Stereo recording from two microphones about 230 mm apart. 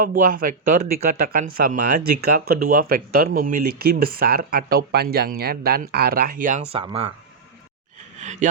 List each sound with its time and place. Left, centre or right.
0.1 s speech: right
6.7 s speech: right
8.2 s speech: right